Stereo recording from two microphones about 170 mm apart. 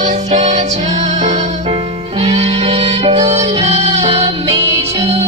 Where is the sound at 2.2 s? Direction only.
35° right (ahead or behind).